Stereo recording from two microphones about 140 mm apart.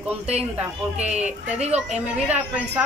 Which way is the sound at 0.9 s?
55° right (ahead or behind).